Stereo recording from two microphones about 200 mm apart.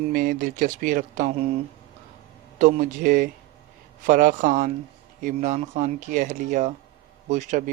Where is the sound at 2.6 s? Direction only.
40° right (ahead or behind).